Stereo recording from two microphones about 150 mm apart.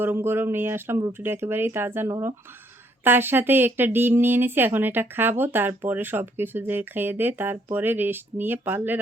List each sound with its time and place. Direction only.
0.0 s speech: 15° right (ahead or behind)